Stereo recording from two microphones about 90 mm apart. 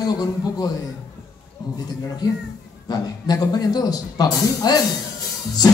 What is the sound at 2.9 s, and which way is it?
A man's voice, 45° left (ahead or behind).